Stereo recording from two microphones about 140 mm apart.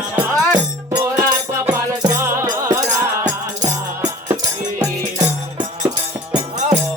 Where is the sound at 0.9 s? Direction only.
20° right (ahead or behind).